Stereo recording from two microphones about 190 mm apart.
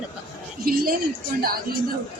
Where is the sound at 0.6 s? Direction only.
50° right (ahead or behind).